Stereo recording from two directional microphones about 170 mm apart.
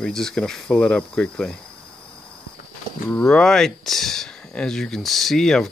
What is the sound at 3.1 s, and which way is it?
Speech, 5° left (ahead or behind).